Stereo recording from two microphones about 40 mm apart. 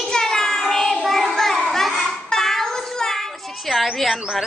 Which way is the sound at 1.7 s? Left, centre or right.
Centre.